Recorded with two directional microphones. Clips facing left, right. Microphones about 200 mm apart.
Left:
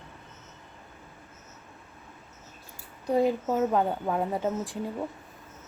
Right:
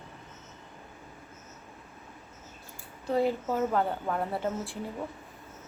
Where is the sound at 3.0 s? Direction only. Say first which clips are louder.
Left 3 dB; 15° left (ahead or behind).